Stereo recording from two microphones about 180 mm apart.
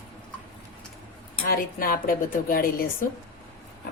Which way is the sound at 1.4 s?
55° left (ahead or behind).